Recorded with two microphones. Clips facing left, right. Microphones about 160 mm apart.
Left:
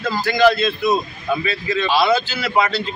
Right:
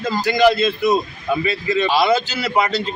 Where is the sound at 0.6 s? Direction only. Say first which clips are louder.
Right 1 dB; 20° right (ahead or behind).